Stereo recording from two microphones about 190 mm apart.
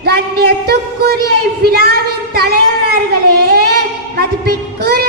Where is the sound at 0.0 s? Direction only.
55° right (ahead or behind).